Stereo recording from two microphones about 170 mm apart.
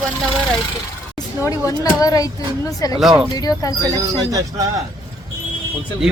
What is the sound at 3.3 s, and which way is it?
Speech, 20° left (ahead or behind).